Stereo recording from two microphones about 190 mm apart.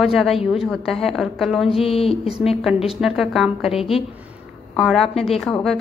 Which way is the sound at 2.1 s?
Centre (ahead or behind).